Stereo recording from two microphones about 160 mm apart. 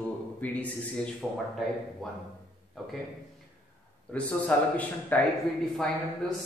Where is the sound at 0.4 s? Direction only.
10° left (ahead or behind).